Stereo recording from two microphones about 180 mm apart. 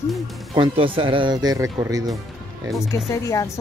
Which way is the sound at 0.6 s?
30° right (ahead or behind).